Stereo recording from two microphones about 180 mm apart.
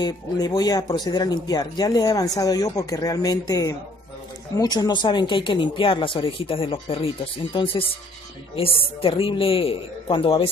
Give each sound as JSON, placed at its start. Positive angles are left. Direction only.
{"t": 0.0, "sound": "a man's voice", "side_deg": 20}